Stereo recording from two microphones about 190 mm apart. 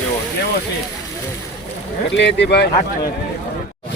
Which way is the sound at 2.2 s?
65° left (ahead or behind).